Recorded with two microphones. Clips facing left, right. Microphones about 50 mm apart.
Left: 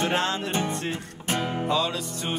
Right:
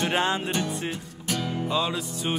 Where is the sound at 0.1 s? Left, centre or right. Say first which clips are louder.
Right 1 dB; centre.